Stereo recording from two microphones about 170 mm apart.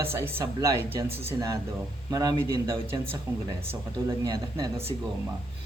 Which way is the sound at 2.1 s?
20° right (ahead or behind).